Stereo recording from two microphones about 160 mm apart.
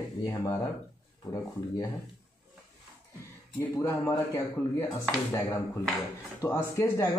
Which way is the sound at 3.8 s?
20° left (ahead or behind).